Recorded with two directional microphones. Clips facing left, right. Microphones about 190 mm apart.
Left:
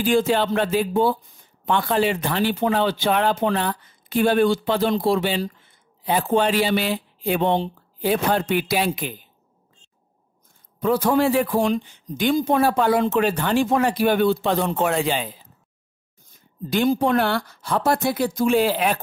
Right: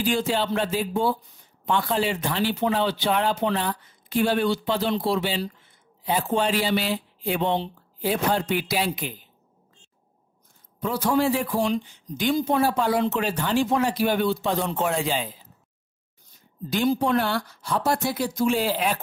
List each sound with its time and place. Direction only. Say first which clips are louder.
0.0 s speech: left 5 dB; 50° left (ahead or behind)
10.8 s speech: left 4 dB; 55° left (ahead or behind)
16.7 s speech: left 3 dB; 55° left (ahead or behind)